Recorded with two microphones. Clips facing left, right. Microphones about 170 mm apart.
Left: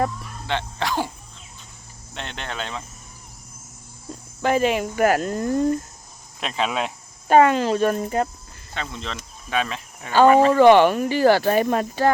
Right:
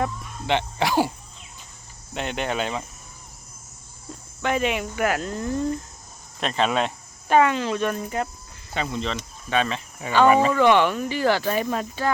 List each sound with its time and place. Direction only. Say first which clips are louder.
0.4 s speech: right 3 dB; 15° right (ahead or behind)
2.1 s speech: right 6 dB; 10° right (ahead or behind)
4.4 s speech: left 4 dB; 35° left (ahead or behind)
6.4 s speech: right 2 dB; 5° left (ahead or behind)
7.3 s speech: left 4 dB; 40° left (ahead or behind)
8.7 s speech: right 4 dB; 5° right (ahead or behind)
10.5 s speech: left 5 dB; 40° left (ahead or behind)